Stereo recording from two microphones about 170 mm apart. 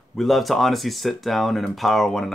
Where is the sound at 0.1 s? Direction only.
Centre (ahead or behind).